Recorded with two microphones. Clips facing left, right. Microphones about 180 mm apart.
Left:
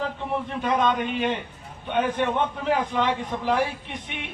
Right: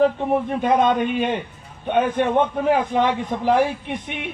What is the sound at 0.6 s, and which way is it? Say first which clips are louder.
A man's voice: right 3 dB; 50° right (ahead or behind).